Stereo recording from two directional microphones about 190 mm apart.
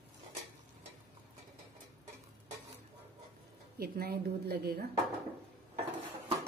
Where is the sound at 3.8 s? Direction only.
55° right (ahead or behind).